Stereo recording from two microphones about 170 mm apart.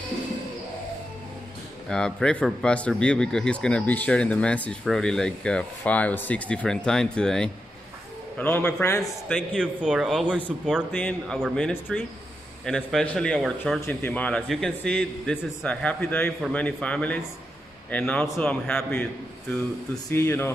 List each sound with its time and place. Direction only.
1.9 s a man's voice: 5° left (ahead or behind)
9.6 s speech: 5° right (ahead or behind)
10.9 s a man's voice: 10° left (ahead or behind)
20.1 s a man's voice: 15° left (ahead or behind)